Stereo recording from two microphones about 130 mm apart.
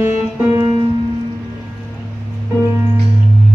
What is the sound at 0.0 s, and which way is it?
Music, 25° right (ahead or behind).